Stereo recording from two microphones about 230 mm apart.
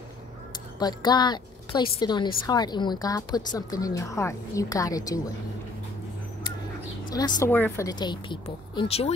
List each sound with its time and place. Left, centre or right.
0.7 s a woman's voice: centre
7.2 s speech: centre